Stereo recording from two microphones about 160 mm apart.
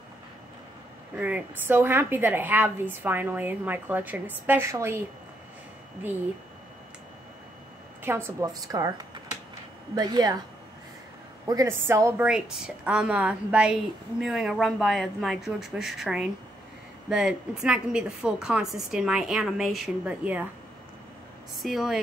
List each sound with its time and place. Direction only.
1.1 s a woman's voice: 10° right (ahead or behind)
8.0 s a woman's voice: 15° right (ahead or behind)
11.4 s a woman's voice: 20° right (ahead or behind)
12.3 s a woman's voice: 5° right (ahead or behind)
21.6 s a woman's voice: centre (ahead or behind)